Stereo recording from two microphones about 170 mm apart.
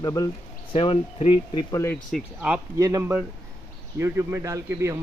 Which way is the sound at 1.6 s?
15° left (ahead or behind).